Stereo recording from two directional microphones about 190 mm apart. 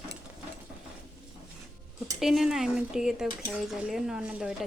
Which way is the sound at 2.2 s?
Centre (ahead or behind).